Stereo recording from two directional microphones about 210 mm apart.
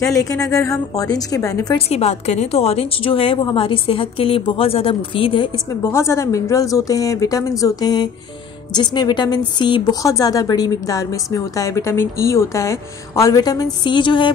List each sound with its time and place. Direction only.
0.0 s speech: 15° left (ahead or behind)
1.9 s a woman's voice: 30° left (ahead or behind)
5.9 s a woman's voice: 15° left (ahead or behind)